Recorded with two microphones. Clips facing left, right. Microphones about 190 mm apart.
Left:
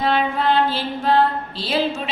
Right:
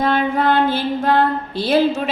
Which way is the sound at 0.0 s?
50° right (ahead or behind).